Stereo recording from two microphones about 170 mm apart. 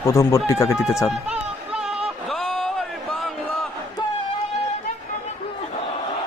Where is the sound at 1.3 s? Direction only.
5° right (ahead or behind).